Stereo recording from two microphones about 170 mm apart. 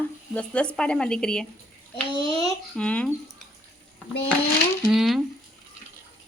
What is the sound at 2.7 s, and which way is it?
Speech, 5° left (ahead or behind).